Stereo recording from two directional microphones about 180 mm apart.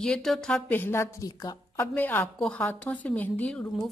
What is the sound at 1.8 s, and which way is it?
A woman's voice, 10° left (ahead or behind).